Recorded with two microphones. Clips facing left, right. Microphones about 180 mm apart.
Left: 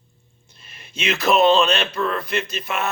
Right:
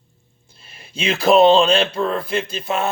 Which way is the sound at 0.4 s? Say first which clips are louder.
Right 2 dB; 30° right (ahead or behind).